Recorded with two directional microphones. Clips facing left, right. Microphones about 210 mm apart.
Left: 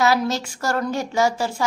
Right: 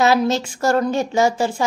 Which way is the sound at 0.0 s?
25° right (ahead or behind).